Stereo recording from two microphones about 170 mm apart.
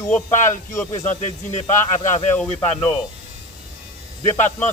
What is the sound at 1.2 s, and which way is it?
Speech, 45° left (ahead or behind).